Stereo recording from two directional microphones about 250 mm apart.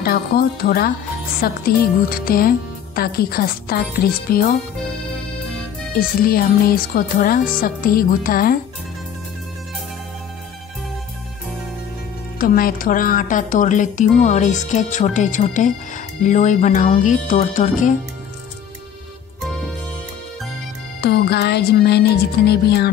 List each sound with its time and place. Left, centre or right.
0.0 s speech: left
5.9 s speech: left
12.4 s speech: left
21.0 s speech: left